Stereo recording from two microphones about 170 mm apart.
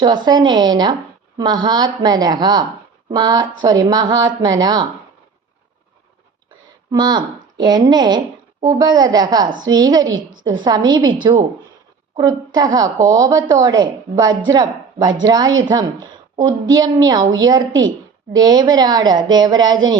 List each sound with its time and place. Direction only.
0.0 s a woman's voice: 25° right (ahead or behind)
6.9 s a woman's voice: 25° right (ahead or behind)